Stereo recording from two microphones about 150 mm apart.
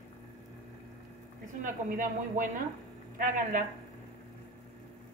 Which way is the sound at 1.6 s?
65° right (ahead or behind).